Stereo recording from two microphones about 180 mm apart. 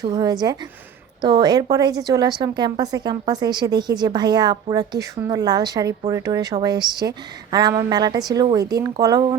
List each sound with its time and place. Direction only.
0.0 s speech: 20° right (ahead or behind)